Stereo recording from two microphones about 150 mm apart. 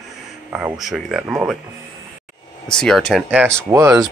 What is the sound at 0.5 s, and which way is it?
Speech, 10° right (ahead or behind).